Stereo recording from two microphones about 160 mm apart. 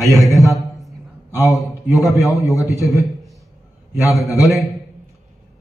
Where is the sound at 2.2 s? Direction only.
20° left (ahead or behind).